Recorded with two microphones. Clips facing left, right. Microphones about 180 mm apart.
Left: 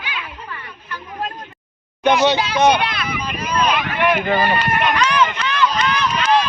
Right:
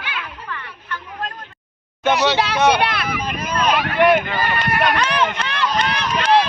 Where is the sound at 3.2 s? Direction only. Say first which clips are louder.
Left 2 dB; 50° right (ahead or behind).